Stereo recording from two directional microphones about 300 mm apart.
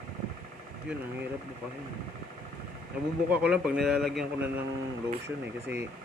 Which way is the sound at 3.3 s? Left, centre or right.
Centre.